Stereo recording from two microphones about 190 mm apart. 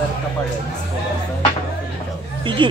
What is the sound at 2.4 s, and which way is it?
Speech, 25° right (ahead or behind).